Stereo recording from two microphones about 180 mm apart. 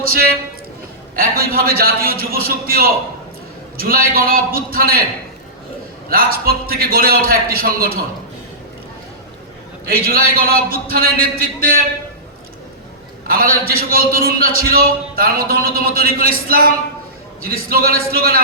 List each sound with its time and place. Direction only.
0.0 s a man's voice: 55° right (ahead or behind)
6.1 s a man's voice: 55° right (ahead or behind)
9.8 s a man's voice: 55° right (ahead or behind)
13.2 s a man's voice: 55° right (ahead or behind)